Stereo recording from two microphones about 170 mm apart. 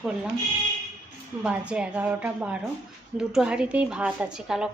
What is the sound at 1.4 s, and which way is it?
A woman's voice, 5° right (ahead or behind).